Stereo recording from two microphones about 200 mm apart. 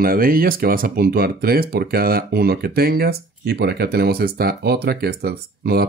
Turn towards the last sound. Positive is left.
turn(degrees=-50)  # may be behind; listen again after turning